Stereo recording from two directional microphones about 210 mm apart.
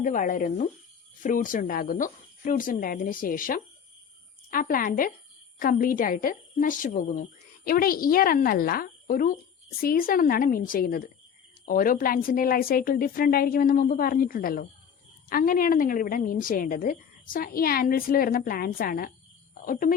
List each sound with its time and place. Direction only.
0.0 s a woman's voice: 40° left (ahead or behind)